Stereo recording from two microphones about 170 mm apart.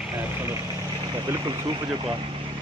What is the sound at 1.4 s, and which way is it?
Speech, 30° right (ahead or behind).